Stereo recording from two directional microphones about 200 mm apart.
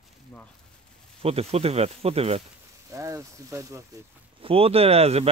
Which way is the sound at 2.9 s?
15° right (ahead or behind).